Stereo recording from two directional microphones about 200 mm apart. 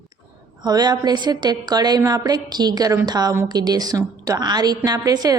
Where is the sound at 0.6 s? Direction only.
20° right (ahead or behind).